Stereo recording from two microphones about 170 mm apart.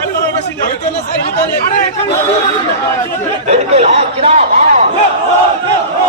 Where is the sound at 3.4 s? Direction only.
40° right (ahead or behind).